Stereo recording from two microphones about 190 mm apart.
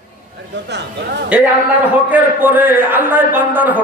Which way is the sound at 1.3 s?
5° right (ahead or behind).